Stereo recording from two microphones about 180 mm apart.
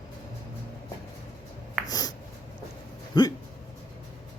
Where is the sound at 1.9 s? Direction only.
20° left (ahead or behind).